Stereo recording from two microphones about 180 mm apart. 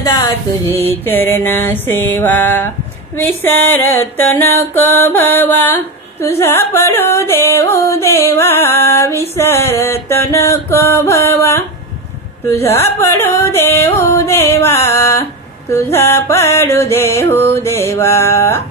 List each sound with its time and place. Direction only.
0.0 s music: 20° left (ahead or behind)
0.7 s music: 10° left (ahead or behind)
13.2 s music: 15° left (ahead or behind)